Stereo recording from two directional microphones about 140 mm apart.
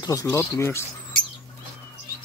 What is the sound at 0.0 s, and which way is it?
Speech, 25° left (ahead or behind).